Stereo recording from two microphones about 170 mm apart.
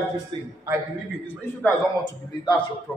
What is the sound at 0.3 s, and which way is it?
Speech, 30° right (ahead or behind).